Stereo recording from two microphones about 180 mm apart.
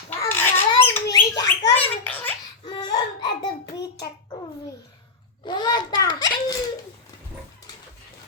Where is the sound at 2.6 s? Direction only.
20° left (ahead or behind).